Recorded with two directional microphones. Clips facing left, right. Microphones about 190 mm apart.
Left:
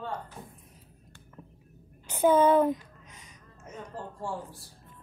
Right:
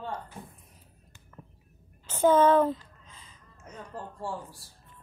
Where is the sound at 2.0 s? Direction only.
10° left (ahead or behind).